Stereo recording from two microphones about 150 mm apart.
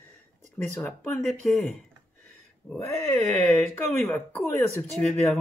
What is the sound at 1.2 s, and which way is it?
Speech, centre (ahead or behind).